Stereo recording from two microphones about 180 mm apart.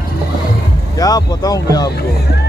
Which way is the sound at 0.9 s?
20° left (ahead or behind).